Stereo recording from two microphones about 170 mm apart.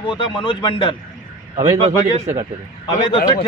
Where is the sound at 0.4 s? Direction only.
30° left (ahead or behind).